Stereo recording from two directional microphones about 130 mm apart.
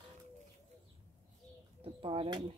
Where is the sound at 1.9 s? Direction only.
40° right (ahead or behind).